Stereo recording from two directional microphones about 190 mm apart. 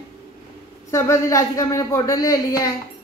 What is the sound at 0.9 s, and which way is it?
A man's voice, 15° left (ahead or behind).